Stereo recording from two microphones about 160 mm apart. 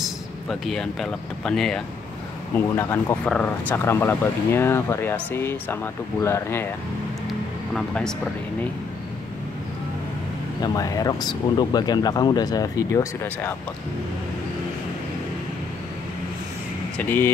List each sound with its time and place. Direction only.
0.0 s speech: centre (ahead or behind)
2.7 s speech: 15° left (ahead or behind)
7.2 s a sound: 5° left (ahead or behind)
10.6 s speech: 20° left (ahead or behind)
16.9 s speech: 10° left (ahead or behind)